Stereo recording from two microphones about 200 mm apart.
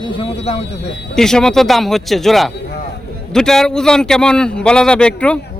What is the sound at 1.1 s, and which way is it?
A man's voice, 5° left (ahead or behind).